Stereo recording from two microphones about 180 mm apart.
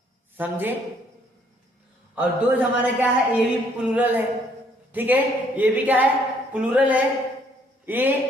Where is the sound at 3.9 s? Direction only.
10° right (ahead or behind).